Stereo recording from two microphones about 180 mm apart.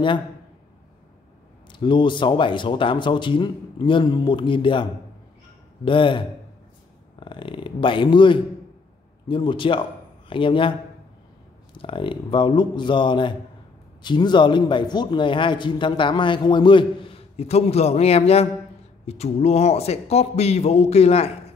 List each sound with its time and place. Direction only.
1.7 s a man's voice: 25° left (ahead or behind)
5.9 s a man's voice: 30° left (ahead or behind)
11.7 s a man's voice: 30° left (ahead or behind)